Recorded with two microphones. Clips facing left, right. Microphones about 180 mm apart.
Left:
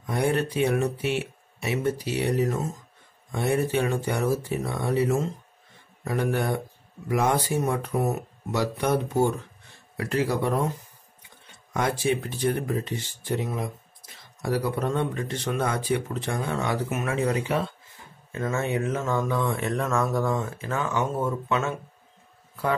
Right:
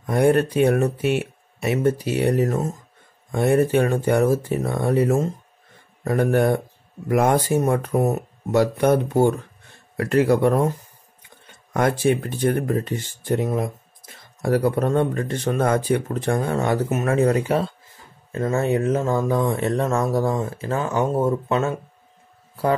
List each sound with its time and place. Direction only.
0.0 s speech: 50° right (ahead or behind)
11.7 s speech: 55° right (ahead or behind); by 21.7 s 35° right (ahead or behind)